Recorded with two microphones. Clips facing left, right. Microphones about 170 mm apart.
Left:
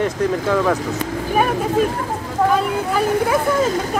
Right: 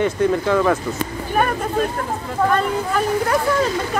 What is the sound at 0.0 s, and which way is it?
Speech, centre (ahead or behind).